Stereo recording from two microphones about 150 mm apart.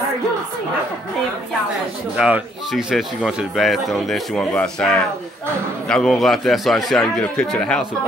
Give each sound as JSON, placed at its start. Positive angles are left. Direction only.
{"t": 2.1, "sound": "a man's voice", "side_deg": -5}